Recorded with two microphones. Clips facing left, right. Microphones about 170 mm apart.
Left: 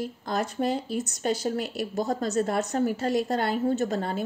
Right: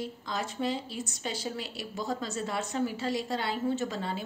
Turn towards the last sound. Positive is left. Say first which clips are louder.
# left 6 dB
turn(degrees=50)  # may be behind; listen again after turning